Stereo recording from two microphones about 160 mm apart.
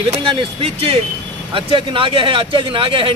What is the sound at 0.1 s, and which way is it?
A man's voice, 35° right (ahead or behind).